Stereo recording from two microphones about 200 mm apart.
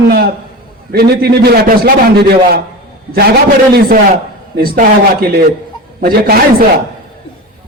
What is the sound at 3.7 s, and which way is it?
A man's voice, 45° right (ahead or behind).